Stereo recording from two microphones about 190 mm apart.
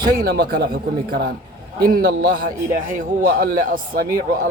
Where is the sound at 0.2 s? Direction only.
55° right (ahead or behind).